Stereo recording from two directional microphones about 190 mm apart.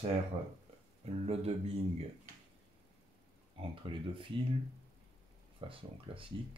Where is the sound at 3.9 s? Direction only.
25° right (ahead or behind).